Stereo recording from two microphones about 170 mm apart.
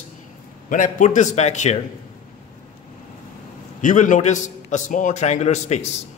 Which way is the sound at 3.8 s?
50° left (ahead or behind).